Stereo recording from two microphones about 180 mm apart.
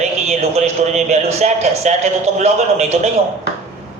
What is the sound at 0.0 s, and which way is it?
A man's voice, 40° right (ahead or behind).